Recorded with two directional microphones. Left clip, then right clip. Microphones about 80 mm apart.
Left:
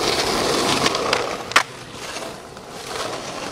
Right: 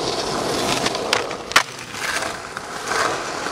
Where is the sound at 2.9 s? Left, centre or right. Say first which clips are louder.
Right 8 dB; right.